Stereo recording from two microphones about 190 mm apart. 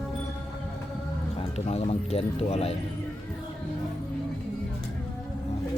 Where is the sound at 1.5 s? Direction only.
35° left (ahead or behind).